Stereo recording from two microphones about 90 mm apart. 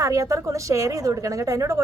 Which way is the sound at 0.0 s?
40° right (ahead or behind).